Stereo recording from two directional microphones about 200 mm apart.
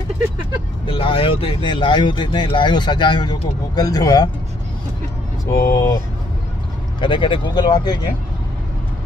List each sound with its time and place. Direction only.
0.8 s speech: 25° left (ahead or behind)
5.7 s speech: 15° left (ahead or behind)
7.0 s speech: 25° left (ahead or behind)